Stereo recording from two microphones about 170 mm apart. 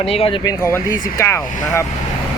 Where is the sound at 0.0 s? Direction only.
35° left (ahead or behind).